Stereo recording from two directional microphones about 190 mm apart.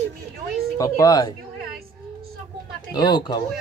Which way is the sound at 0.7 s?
15° left (ahead or behind).